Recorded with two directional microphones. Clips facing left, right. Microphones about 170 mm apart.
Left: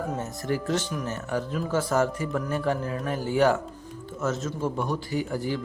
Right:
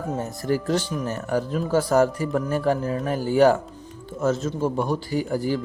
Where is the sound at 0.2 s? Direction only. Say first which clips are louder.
Right 4 dB; 35° right (ahead or behind).